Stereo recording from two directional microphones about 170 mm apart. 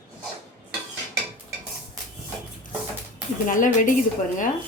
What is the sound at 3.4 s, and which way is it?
Speech, 50° left (ahead or behind).